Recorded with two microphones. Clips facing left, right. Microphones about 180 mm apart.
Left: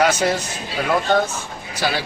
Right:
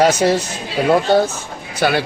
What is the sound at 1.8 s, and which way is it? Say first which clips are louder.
Speech: right 6 dB; 55° right (ahead or behind).